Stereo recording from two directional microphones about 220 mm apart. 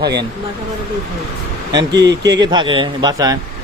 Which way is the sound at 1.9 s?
50° right (ahead or behind).